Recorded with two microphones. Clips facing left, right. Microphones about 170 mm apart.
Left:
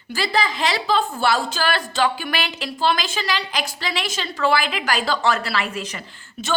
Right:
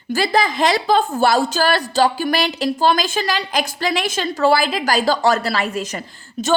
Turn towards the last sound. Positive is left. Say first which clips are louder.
# right 6 dB
turn(degrees=-40)  # may be behind; listen again after turning